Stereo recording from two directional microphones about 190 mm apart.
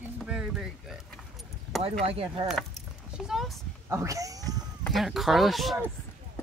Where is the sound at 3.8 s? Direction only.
15° right (ahead or behind).